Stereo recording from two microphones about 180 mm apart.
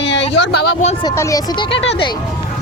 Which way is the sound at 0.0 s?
85° left.